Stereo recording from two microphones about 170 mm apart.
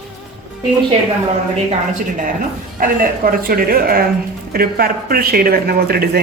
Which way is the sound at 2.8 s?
55° right (ahead or behind).